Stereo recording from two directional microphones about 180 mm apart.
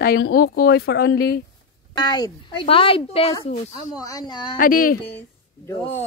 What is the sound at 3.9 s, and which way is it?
Speech, 20° left (ahead or behind).